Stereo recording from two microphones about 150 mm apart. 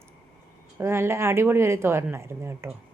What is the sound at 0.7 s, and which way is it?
A woman's voice, 15° right (ahead or behind).